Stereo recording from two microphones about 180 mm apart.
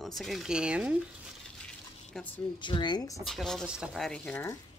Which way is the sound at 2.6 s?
25° left (ahead or behind).